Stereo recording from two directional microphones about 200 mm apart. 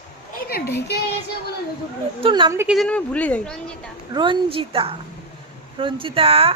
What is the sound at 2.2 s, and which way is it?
Speech, 25° right (ahead or behind).